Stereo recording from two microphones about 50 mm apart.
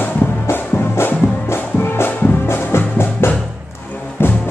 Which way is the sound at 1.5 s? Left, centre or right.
Left.